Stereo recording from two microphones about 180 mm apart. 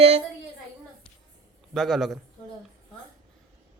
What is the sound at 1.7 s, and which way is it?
Speech, centre (ahead or behind).